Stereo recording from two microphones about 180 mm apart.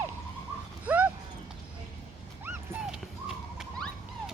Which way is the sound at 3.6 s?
Centre (ahead or behind).